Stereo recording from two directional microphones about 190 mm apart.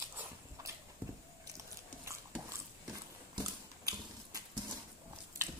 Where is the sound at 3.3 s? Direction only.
20° right (ahead or behind).